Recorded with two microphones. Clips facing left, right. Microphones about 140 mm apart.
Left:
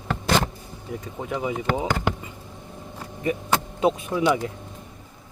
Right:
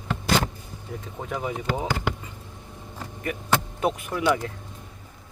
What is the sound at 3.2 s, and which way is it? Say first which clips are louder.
Speech: left 2 dB; 20° left (ahead or behind).